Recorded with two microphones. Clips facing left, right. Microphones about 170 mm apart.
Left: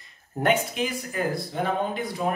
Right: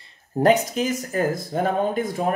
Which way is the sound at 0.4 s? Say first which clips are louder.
Right 5 dB; 40° right (ahead or behind).